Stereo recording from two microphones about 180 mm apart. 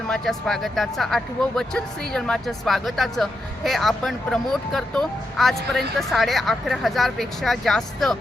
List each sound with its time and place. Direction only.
0.1 s speech: centre (ahead or behind)